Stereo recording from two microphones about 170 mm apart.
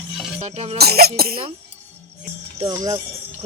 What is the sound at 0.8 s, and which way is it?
Speech, 65° right (ahead or behind).